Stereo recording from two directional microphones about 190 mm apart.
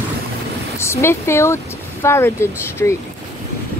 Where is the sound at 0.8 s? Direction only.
15° left (ahead or behind).